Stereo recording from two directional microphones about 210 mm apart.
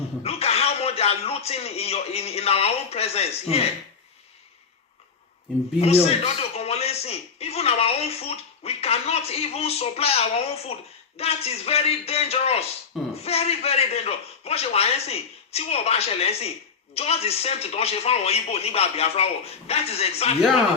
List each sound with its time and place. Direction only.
0.2 s speech: 30° left (ahead or behind)
5.8 s speech: 30° left (ahead or behind)